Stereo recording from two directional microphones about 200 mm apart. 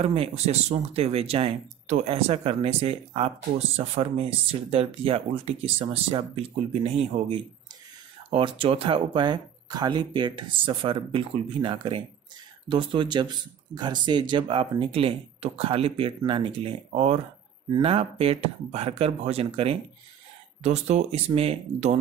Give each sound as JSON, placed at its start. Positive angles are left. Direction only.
{"t": 0.0, "sound": "speech", "side_deg": -30}